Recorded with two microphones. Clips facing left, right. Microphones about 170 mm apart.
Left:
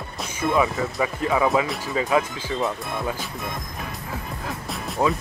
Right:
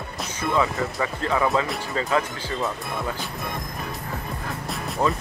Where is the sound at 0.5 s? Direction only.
15° left (ahead or behind).